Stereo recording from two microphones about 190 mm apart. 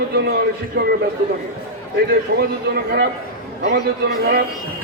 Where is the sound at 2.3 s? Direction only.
55° right (ahead or behind).